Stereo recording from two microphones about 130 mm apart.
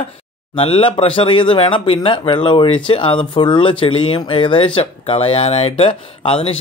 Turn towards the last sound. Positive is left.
turn(degrees=45)  # may be behind; listen again after turning